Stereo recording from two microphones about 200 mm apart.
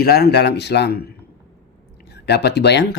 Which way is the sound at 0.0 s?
50° left (ahead or behind).